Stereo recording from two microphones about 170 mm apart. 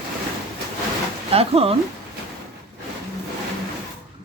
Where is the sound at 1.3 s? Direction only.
35° right (ahead or behind).